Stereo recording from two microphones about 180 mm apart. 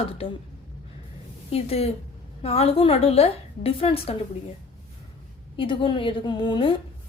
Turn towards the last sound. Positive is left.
turn(degrees=25)  # may be behind; listen again after turning